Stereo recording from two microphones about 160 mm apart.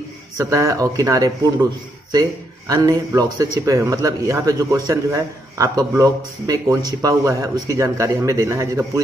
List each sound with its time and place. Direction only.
0.4 s a man's voice: 20° right (ahead or behind)
2.7 s a man's voice: 20° right (ahead or behind)